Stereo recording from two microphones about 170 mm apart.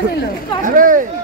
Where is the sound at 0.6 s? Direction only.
50° right (ahead or behind).